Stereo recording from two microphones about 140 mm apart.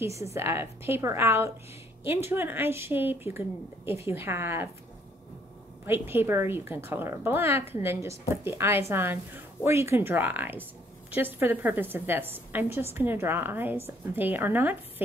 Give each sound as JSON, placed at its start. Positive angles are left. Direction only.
{"t": 0.2, "sound": "a woman's voice", "side_deg": -20}
{"t": 5.9, "sound": "a woman's voice", "side_deg": -15}